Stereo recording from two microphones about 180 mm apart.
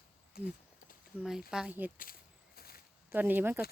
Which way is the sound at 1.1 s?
10° left (ahead or behind).